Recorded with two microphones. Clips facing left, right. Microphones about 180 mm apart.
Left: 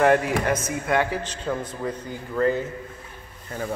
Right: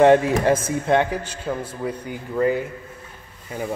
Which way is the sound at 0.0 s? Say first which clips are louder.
Right 5 dB; 25° right (ahead or behind).